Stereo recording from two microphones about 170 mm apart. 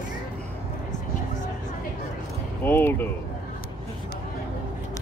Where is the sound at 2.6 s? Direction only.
10° left (ahead or behind).